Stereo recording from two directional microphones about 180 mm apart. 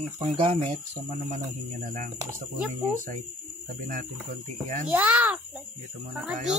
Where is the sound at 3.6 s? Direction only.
45° right (ahead or behind).